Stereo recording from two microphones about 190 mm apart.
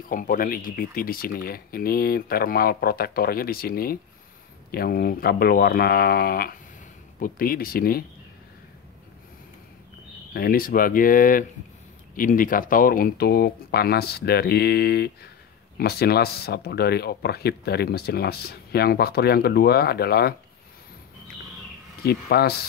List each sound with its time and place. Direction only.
0.1 s speech: 45° left (ahead or behind)
10.3 s speech: 50° left (ahead or behind)
22.0 s speech: 55° left (ahead or behind)